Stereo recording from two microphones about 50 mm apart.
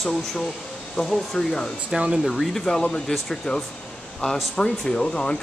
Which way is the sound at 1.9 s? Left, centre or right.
Centre.